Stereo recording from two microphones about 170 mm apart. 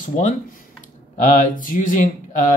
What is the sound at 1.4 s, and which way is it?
Speech, 50° left (ahead or behind).